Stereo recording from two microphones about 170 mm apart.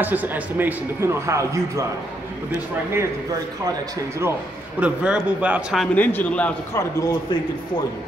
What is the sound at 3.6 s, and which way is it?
A man's voice, 20° right (ahead or behind).